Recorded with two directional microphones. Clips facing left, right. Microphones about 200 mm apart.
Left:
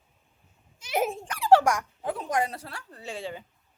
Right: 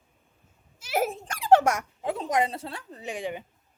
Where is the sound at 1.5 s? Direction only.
25° right (ahead or behind).